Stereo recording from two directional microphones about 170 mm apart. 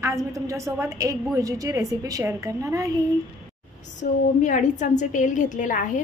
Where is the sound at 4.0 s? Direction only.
45° left (ahead or behind).